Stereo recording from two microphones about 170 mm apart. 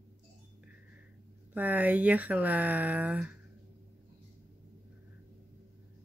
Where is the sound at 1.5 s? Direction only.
10° right (ahead or behind).